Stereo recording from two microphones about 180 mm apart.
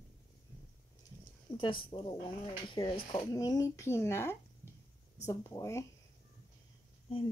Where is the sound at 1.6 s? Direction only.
25° left (ahead or behind).